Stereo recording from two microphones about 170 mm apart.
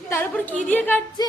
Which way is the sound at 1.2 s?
25° left (ahead or behind).